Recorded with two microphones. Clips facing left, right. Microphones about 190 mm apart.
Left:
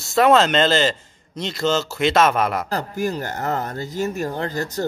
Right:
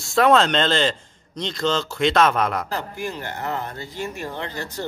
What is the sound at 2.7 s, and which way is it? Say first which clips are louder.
Speech: left 5 dB; 40° left (ahead or behind).